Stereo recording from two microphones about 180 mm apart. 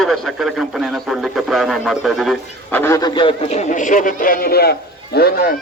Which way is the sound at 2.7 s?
15° left (ahead or behind).